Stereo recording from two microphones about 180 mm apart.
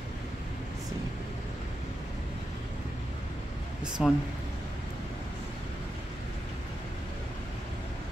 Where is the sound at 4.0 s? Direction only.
Centre (ahead or behind).